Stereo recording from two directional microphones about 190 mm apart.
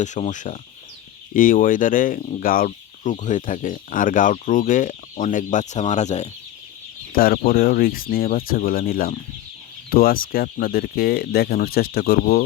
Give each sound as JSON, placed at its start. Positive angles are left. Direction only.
{"t": 0.0, "sound": "speech", "side_deg": 40}
{"t": 7.1, "sound": "speech", "side_deg": 50}